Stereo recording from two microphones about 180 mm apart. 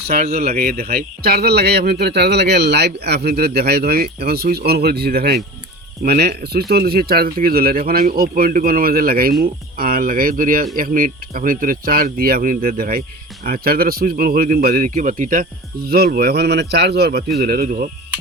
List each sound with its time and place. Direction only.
0.2 s speech: 35° right (ahead or behind)
0.5 s speech: 60° right (ahead or behind)